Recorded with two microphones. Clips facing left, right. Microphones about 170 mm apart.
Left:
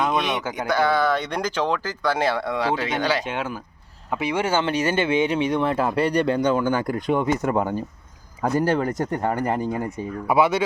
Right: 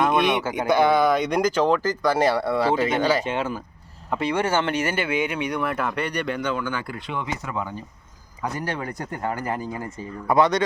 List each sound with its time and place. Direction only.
0.0 s speech: centre (ahead or behind)
0.7 s speech: 20° right (ahead or behind)
3.2 s speech: 5° left (ahead or behind); by 7.8 s 50° left (ahead or behind)
8.4 s speech: 40° left (ahead or behind)
10.2 s speech: 5° left (ahead or behind)